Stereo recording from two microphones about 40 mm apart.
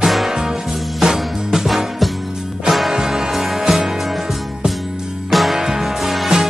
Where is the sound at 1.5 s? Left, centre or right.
Centre.